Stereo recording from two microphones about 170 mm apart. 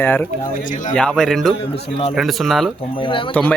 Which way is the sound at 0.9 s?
5° left (ahead or behind).